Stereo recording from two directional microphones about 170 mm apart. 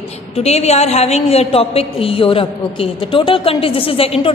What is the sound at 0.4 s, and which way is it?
A woman's voice, 40° left (ahead or behind).